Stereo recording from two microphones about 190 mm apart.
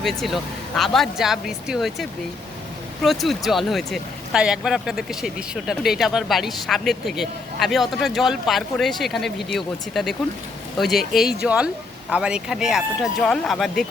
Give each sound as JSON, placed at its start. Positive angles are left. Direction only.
{"t": 0.0, "sound": "speech", "side_deg": 0}